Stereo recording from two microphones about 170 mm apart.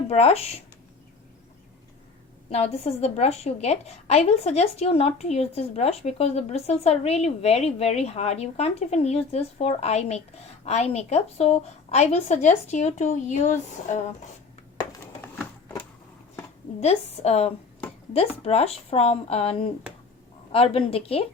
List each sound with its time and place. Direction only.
0.1 s a woman's voice: 35° left (ahead or behind)
2.5 s a woman's voice: 40° left (ahead or behind)
16.8 s a woman's voice: 40° left (ahead or behind)